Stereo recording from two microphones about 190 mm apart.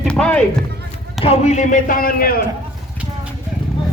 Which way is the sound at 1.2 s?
35° left (ahead or behind).